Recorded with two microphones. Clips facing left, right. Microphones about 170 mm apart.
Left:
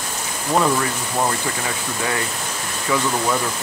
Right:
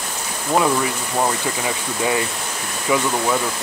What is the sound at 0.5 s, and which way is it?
Speech, 5° right (ahead or behind).